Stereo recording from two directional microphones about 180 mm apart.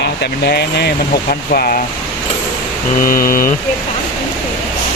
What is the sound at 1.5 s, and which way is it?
Mantra, 50° left (ahead or behind).